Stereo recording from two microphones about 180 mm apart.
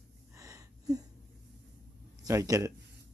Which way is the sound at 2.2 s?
20° right (ahead or behind).